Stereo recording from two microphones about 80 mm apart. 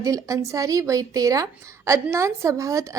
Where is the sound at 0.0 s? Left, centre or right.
Right.